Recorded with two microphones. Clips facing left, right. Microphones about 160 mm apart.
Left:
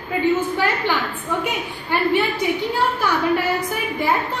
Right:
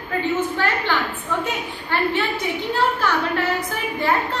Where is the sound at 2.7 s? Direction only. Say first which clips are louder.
Even; 10° left (ahead or behind).